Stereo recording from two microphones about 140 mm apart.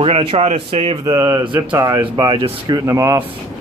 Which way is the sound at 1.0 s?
20° right (ahead or behind).